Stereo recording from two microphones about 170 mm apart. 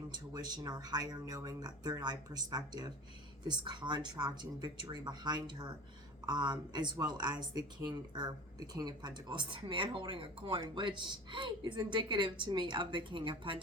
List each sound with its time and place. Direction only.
0.1 s speech: 25° right (ahead or behind)